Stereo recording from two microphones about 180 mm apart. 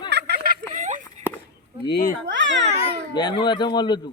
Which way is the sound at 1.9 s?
50° left (ahead or behind).